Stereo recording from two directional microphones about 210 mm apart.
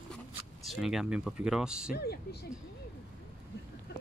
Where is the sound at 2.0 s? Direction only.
50° left (ahead or behind).